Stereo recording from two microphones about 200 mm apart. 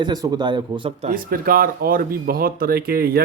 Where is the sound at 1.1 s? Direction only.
45° right (ahead or behind).